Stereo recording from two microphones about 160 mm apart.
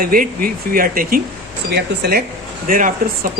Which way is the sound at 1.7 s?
85° right.